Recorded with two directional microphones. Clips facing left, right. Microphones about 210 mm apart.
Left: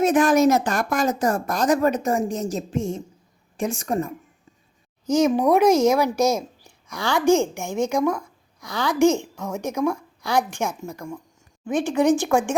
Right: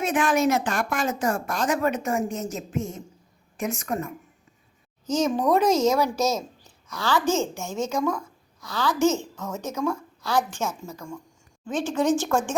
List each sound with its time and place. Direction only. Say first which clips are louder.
0.0 s speech: left 6 dB; 40° left (ahead or behind)
5.0 s a woman's voice: left 4 dB; 10° left (ahead or behind)